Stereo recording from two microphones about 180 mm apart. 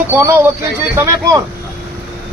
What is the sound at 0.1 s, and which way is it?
Speech, 15° right (ahead or behind).